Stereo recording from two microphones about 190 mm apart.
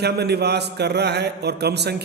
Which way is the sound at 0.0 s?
60° right (ahead or behind).